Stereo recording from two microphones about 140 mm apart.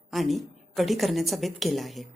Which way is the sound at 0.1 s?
Centre (ahead or behind).